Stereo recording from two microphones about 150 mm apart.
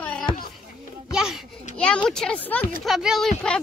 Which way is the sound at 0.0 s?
10° left (ahead or behind).